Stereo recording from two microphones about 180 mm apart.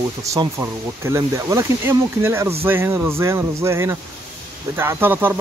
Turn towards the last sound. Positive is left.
turn(degrees=-10)  # may be behind; listen again after turning